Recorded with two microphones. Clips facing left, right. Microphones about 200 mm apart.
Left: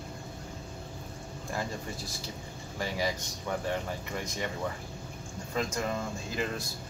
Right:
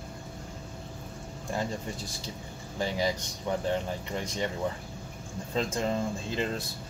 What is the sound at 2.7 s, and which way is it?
Speech, 25° right (ahead or behind).